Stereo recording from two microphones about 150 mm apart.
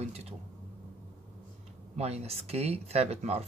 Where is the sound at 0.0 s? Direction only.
45° right (ahead or behind).